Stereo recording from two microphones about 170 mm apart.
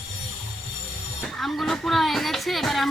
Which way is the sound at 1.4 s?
Centre (ahead or behind).